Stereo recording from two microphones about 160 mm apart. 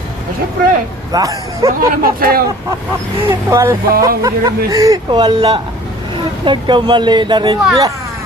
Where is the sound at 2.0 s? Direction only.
65° right (ahead or behind).